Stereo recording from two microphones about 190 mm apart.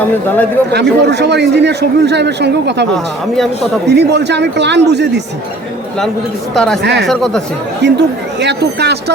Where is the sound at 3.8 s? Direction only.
65° right (ahead or behind).